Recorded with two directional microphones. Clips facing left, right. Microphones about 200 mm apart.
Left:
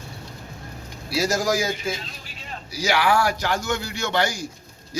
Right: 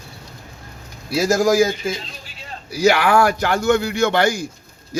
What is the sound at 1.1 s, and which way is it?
A man's voice, 50° right (ahead or behind).